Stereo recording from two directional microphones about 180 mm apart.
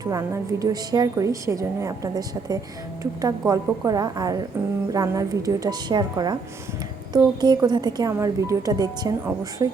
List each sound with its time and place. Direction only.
0.0 s a woman's voice: 20° right (ahead or behind)